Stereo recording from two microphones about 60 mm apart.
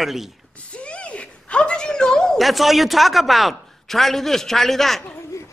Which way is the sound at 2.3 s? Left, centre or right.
Centre.